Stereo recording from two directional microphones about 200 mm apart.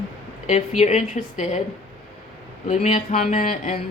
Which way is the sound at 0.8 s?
35° left (ahead or behind).